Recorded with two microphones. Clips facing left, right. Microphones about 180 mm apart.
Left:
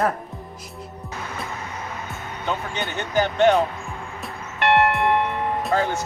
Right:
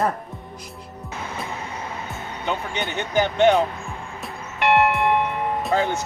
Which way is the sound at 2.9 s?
15° right (ahead or behind).